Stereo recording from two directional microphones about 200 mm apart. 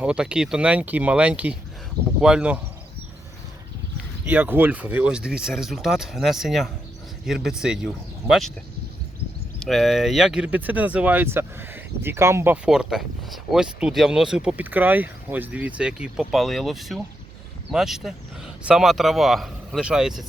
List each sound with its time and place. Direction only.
0.0 s speech: 5° right (ahead or behind)
4.3 s speech: 10° right (ahead or behind)
9.6 s speech: centre (ahead or behind)